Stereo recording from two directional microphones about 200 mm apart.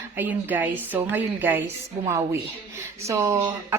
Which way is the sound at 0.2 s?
10° right (ahead or behind).